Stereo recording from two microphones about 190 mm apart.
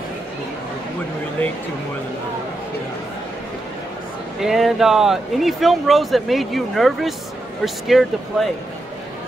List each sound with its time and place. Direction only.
4.4 s speech: centre (ahead or behind)